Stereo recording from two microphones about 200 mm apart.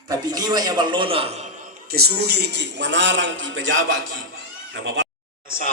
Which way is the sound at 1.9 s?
55° right (ahead or behind).